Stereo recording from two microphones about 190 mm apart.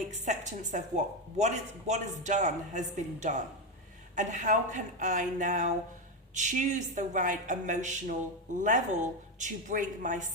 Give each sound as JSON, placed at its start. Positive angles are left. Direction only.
{"t": 0.1, "sound": "speech", "side_deg": -40}